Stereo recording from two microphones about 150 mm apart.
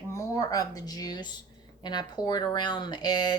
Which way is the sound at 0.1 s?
20° left (ahead or behind).